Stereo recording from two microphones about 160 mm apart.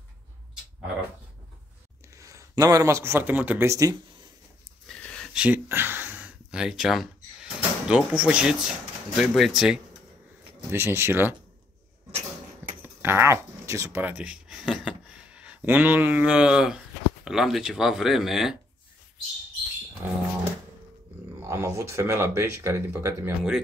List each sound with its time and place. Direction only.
2.1 s a man's voice: 20° right (ahead or behind)
4.8 s a sound: 5° left (ahead or behind)
5.3 s speech: 10° right (ahead or behind)
10.7 s speech: 15° right (ahead or behind)
12.8 s speech: 15° right (ahead or behind)
20.0 s speech: 15° right (ahead or behind)
21.4 s speech: 20° right (ahead or behind)